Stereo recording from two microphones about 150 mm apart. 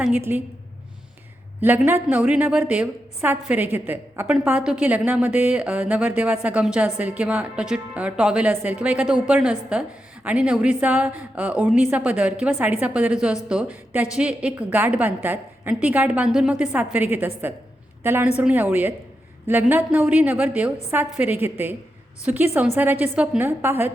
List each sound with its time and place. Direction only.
0.0 s a woman's voice: 10° right (ahead or behind)
1.6 s a woman's voice: 15° right (ahead or behind)